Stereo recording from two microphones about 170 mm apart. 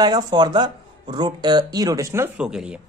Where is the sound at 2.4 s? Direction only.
5° right (ahead or behind).